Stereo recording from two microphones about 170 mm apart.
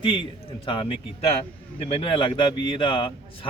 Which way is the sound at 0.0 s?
30° left (ahead or behind).